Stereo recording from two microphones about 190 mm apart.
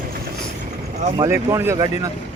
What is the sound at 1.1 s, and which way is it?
Speech, 15° right (ahead or behind).